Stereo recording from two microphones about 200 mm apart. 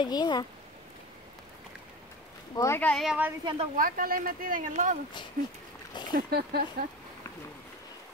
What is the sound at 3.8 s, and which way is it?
Speech, 45° right (ahead or behind).